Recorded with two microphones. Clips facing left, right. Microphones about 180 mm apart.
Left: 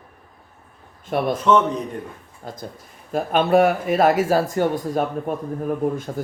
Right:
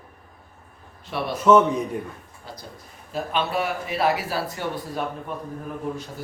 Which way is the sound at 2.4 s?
50° left (ahead or behind).